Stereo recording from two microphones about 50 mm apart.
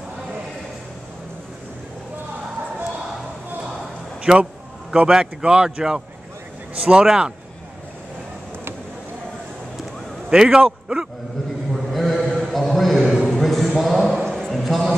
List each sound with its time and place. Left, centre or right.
4.3 s a man's voice: centre
10.3 s a man's voice: centre
11.7 s mantra: centre
12.3 s a sound: centre